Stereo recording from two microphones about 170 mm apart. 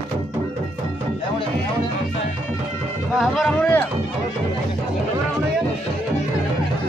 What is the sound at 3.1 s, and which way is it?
Speech, centre (ahead or behind).